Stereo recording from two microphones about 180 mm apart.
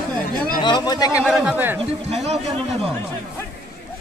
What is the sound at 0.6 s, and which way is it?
Speech, 25° left (ahead or behind).